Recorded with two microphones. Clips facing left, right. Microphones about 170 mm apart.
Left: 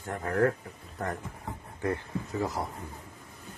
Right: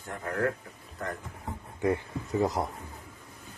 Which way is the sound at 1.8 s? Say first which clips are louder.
Right 3 dB; 15° right (ahead or behind).